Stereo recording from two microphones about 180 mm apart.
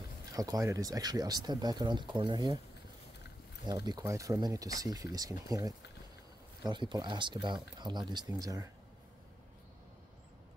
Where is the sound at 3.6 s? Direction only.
20° right (ahead or behind).